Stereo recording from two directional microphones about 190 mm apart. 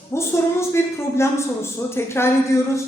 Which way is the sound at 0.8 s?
15° left (ahead or behind).